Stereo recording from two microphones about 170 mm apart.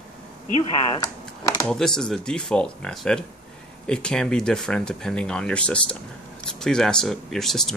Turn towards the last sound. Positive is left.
turn(degrees=0)  # may be behind; listen again after turning